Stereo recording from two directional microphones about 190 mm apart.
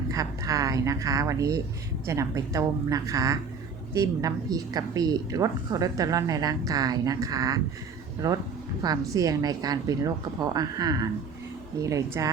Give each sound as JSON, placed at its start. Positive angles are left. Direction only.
{"t": 0.1, "sound": "a woman's voice", "side_deg": -15}